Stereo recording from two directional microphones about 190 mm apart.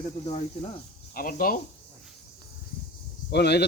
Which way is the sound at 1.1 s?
50° left (ahead or behind).